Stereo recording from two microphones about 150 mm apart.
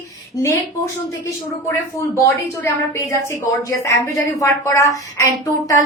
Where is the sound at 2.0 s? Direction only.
15° left (ahead or behind).